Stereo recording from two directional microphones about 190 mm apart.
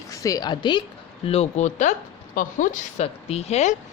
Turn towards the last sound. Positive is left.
turn(degrees=35)  # may be behind; listen again after turning